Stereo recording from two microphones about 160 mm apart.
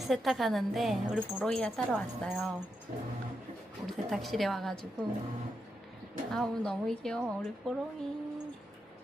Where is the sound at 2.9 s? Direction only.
50° right (ahead or behind).